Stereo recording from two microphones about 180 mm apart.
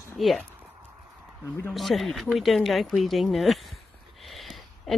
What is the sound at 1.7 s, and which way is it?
A woman's voice, centre (ahead or behind).